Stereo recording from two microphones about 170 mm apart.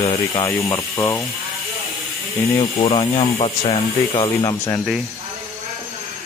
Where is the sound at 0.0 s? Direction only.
30° left (ahead or behind).